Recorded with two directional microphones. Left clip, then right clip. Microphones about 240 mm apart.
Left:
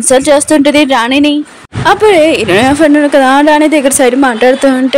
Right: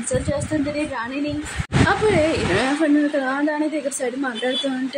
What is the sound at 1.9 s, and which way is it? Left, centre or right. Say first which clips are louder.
Speech: left 14 dB; left.